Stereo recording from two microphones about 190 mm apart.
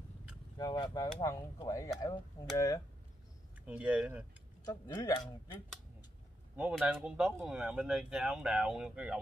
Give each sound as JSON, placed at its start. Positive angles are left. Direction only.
{"t": 0.6, "sound": "speech", "side_deg": 20}
{"t": 3.5, "sound": "speech", "side_deg": -5}
{"t": 4.6, "sound": "speech", "side_deg": 20}
{"t": 6.5, "sound": "speech", "side_deg": -5}